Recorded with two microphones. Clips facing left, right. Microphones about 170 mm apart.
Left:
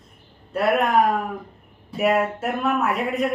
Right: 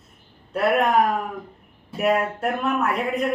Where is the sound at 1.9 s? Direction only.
Centre (ahead or behind).